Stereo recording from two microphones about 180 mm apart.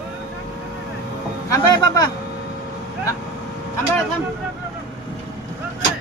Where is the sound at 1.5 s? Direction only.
20° left (ahead or behind).